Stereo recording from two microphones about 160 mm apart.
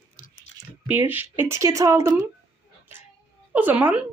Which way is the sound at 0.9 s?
10° right (ahead or behind).